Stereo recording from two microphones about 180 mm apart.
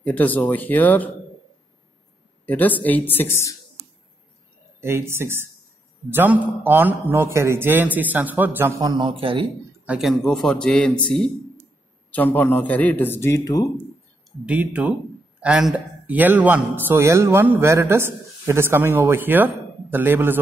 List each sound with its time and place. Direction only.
0.0 s a man's voice: 10° left (ahead or behind)
2.4 s a man's voice: 10° left (ahead or behind)
4.7 s a man's voice: 15° right (ahead or behind)
8.8 s speech: 25° right (ahead or behind)
9.8 s speech: centre (ahead or behind)
12.1 s a man's voice: 10° left (ahead or behind)
14.4 s a man's voice: 5° right (ahead or behind)